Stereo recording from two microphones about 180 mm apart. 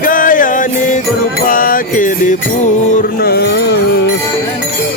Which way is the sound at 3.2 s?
60° left (ahead or behind).